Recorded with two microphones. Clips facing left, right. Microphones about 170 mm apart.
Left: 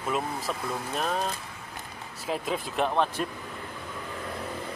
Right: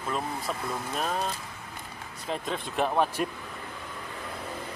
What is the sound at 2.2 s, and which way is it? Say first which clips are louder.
Speech: left 2 dB; 5° left (ahead or behind).